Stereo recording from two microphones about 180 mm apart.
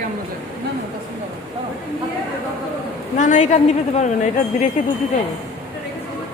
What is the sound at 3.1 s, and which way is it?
A woman's voice, 45° left (ahead or behind).